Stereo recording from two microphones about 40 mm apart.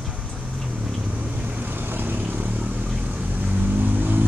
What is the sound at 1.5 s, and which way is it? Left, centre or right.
Vehicle, right.